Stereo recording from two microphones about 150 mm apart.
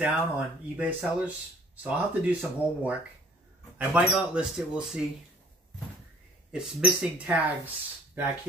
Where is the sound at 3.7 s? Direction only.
5° right (ahead or behind).